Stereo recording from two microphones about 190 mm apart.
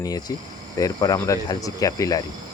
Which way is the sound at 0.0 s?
20° left (ahead or behind).